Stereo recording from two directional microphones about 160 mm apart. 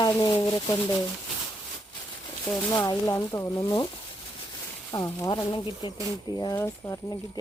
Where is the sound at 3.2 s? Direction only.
20° left (ahead or behind).